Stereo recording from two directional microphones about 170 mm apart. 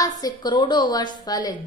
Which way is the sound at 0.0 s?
25° left (ahead or behind).